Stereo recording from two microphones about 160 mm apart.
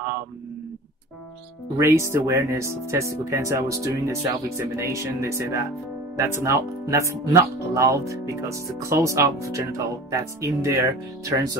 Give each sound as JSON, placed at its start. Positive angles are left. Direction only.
{"t": 1.8, "sound": "speech", "side_deg": -15}